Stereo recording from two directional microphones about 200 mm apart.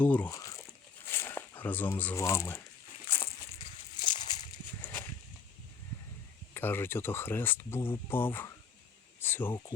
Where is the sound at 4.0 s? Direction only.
20° left (ahead or behind).